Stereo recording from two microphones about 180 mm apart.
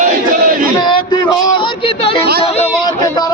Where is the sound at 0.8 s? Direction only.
25° left (ahead or behind).